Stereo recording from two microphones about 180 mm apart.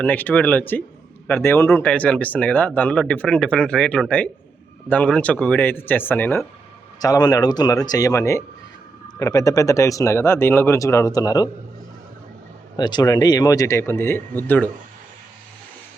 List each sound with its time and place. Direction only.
0.0 s speech: 10° left (ahead or behind)
7.0 s speech: 20° left (ahead or behind)
12.7 s speech: 25° left (ahead or behind)